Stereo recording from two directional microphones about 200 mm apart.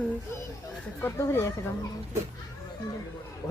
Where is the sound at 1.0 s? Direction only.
10° left (ahead or behind).